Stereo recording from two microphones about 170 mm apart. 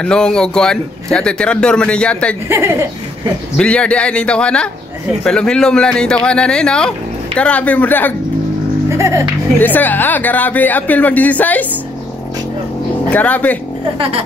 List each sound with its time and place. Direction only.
0.0 s speech: 5° left (ahead or behind)
2.4 s speech: 15° right (ahead or behind)
3.5 s speech: 5° left (ahead or behind)
8.9 s speech: 15° right (ahead or behind)
9.6 s speech: 10° left (ahead or behind)
13.1 s speech: 10° left (ahead or behind)